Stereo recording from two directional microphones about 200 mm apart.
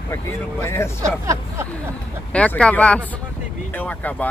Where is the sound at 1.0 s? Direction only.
15° right (ahead or behind).